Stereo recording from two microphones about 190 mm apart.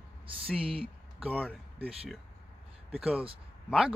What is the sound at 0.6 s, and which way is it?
Speech, 30° right (ahead or behind).